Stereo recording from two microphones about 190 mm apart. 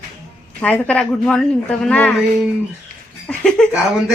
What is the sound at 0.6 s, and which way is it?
Speech, 5° left (ahead or behind).